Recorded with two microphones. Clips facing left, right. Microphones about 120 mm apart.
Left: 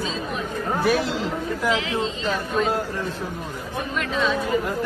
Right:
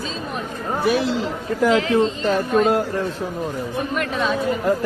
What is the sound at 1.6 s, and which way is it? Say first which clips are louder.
Speech: right 8 dB; 50° right (ahead or behind).